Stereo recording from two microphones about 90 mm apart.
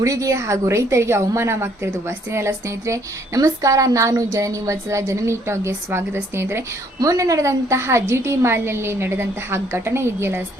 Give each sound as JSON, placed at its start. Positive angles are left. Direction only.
{"t": 0.0, "sound": "a woman's voice", "side_deg": -40}